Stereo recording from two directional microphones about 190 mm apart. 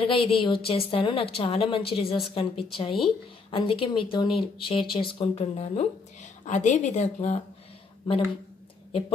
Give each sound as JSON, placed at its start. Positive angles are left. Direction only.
{"t": 0.0, "sound": "a woman's voice", "side_deg": 30}